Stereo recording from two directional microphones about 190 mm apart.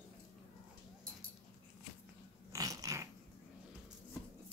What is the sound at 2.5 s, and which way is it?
Cat, 20° right (ahead or behind).